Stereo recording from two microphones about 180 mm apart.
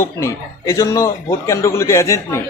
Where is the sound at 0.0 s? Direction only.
15° left (ahead or behind).